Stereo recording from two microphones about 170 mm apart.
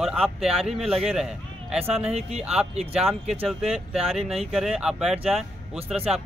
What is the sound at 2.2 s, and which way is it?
Speech, 40° right (ahead or behind).